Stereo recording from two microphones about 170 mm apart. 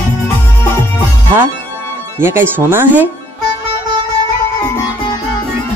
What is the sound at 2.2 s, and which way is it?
Speech, 15° right (ahead or behind).